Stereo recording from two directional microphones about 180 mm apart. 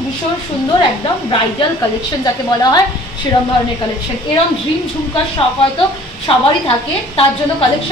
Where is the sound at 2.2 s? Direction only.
20° left (ahead or behind).